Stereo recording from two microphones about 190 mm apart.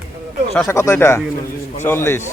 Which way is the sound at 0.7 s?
15° left (ahead or behind).